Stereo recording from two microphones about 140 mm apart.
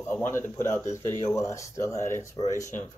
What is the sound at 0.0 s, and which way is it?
A man's voice, 15° left (ahead or behind).